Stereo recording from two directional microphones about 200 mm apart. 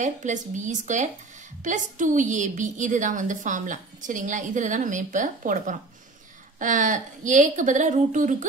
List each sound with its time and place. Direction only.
0.0 s a woman's voice: 35° right (ahead or behind)